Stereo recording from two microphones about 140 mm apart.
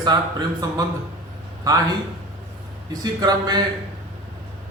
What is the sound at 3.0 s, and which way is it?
Speech, 30° right (ahead or behind).